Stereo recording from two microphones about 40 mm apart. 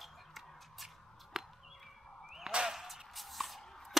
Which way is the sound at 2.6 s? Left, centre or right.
Centre.